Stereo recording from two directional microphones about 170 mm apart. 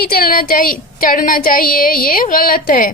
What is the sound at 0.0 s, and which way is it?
A woman's voice, 60° left (ahead or behind).